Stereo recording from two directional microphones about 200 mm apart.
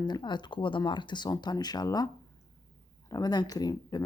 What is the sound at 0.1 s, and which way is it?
Speech, 20° left (ahead or behind).